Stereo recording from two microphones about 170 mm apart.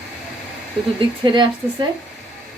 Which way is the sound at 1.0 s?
30° right (ahead or behind).